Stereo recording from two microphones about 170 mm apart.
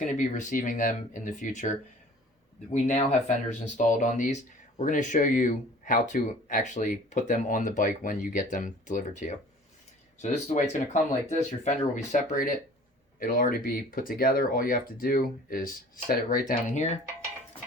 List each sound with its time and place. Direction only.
0.0 s speech: 45° left (ahead or behind)